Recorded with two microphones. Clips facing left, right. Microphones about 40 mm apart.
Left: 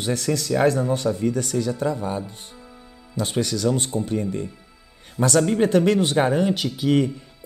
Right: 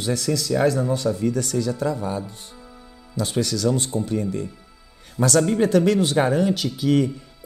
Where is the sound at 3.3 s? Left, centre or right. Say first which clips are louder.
Even; left.